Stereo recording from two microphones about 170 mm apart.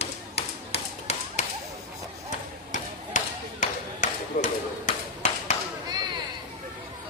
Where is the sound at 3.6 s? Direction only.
45° left (ahead or behind).